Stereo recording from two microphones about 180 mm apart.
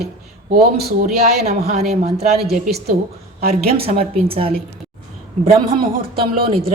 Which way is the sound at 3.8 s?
30° right (ahead or behind).